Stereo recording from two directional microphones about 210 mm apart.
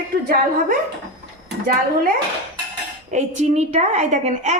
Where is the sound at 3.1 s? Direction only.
35° right (ahead or behind).